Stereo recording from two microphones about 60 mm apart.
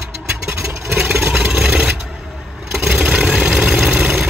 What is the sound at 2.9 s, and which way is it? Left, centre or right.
Vehicle, right.